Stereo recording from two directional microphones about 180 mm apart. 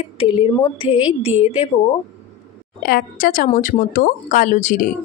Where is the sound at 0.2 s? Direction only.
30° left (ahead or behind).